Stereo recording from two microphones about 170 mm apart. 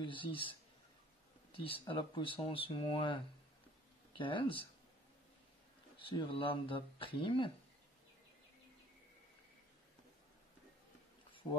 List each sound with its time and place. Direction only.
0.0 s speech: 30° left (ahead or behind)
4.2 s speech: 30° left (ahead or behind)
5.9 s speech: 30° left (ahead or behind)